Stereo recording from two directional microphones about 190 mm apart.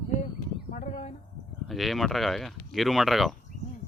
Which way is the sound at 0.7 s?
40° left (ahead or behind).